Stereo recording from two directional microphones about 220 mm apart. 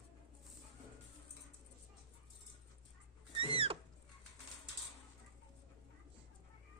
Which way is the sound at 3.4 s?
25° right (ahead or behind).